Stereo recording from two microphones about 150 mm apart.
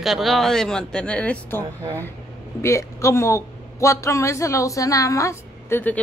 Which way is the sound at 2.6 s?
20° left (ahead or behind).